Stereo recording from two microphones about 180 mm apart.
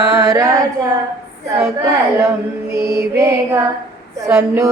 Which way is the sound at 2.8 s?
15° right (ahead or behind).